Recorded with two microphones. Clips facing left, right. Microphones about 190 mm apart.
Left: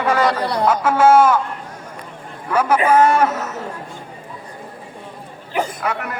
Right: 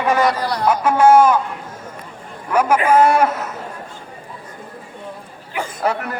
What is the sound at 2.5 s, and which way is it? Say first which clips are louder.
Speech: right 1 dB; 10° right (ahead or behind).